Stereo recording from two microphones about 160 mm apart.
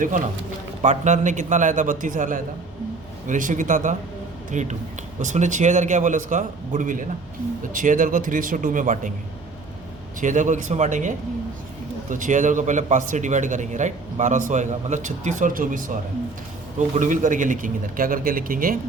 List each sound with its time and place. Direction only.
0.8 s a man's voice: 50° right (ahead or behind)
10.2 s a man's voice: 50° right (ahead or behind)